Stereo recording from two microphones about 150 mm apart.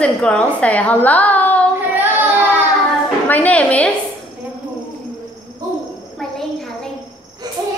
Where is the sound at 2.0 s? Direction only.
10° right (ahead or behind).